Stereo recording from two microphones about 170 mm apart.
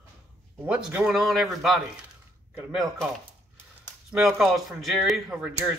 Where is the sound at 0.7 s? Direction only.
5° right (ahead or behind).